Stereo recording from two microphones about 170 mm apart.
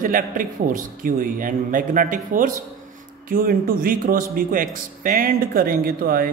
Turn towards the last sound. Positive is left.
turn(degrees=-60)  # may be behind; listen again after turning